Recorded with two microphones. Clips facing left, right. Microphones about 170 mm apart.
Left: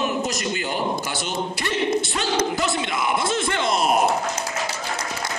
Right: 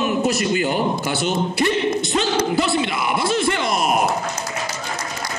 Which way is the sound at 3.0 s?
20° left (ahead or behind).